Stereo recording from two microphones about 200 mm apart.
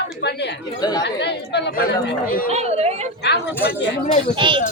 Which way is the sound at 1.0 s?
60° left (ahead or behind).